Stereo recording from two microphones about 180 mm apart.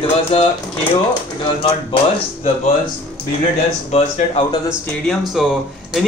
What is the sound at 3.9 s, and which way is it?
Speech, 40° left (ahead or behind).